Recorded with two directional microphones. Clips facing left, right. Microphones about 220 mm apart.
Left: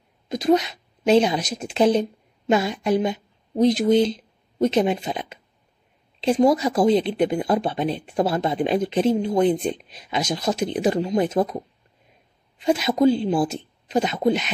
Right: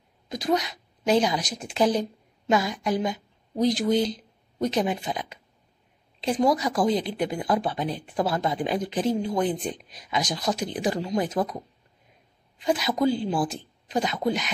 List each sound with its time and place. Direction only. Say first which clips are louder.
0.3 s speech: left 6 dB; 25° left (ahead or behind)